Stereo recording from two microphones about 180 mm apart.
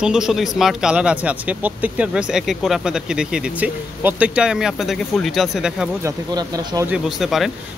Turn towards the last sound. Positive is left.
turn(degrees=0)  # may be behind; listen again after turning